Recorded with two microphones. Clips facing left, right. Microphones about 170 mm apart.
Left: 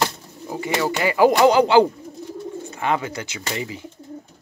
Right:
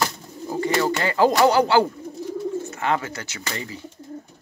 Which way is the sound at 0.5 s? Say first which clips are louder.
Right 1 dB; 10° left (ahead or behind).